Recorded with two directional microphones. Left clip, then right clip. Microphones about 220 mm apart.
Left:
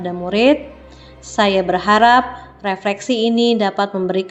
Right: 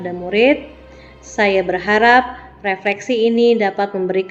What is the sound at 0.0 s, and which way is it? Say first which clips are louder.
A woman's voice: even; 15° left (ahead or behind).